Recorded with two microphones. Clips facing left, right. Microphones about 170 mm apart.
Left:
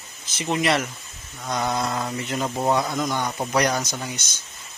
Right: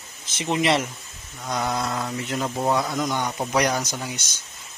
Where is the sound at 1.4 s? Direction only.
Centre (ahead or behind).